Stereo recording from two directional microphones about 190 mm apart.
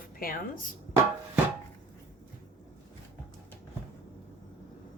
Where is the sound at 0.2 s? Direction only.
50° left (ahead or behind).